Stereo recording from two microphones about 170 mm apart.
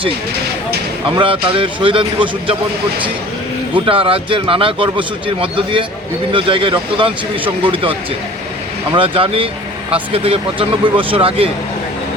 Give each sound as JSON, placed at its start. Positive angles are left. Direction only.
{"t": 1.1, "sound": "a man's voice", "side_deg": -30}
{"t": 3.8, "sound": "a man's voice", "side_deg": -30}